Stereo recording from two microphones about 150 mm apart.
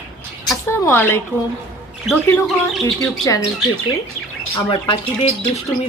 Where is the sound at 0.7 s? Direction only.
15° left (ahead or behind).